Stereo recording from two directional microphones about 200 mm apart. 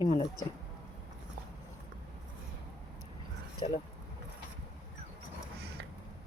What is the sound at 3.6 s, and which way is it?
Speech, 25° left (ahead or behind).